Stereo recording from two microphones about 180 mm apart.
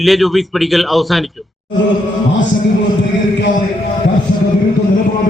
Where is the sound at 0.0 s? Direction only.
Centre (ahead or behind).